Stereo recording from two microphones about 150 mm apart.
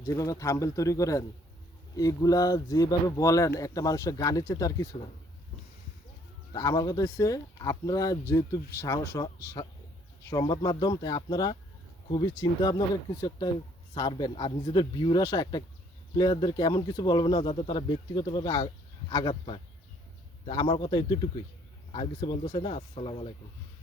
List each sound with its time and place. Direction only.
0.0 s speech: 20° left (ahead or behind)
6.5 s speech: 25° left (ahead or behind)